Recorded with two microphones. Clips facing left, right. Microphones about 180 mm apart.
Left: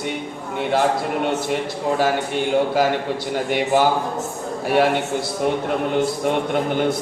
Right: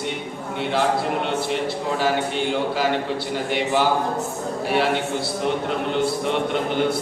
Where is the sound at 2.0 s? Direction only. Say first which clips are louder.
Left 1 dB; 45° left (ahead or behind).